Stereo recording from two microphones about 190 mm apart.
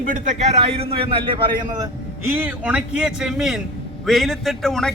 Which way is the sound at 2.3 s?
10° right (ahead or behind).